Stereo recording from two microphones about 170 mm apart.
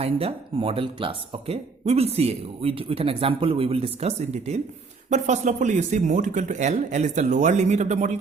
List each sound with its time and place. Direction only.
0.0 s speech: 35° right (ahead or behind)